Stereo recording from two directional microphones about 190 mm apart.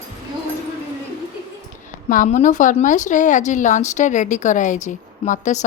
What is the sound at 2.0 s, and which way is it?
A woman's voice, 45° left (ahead or behind).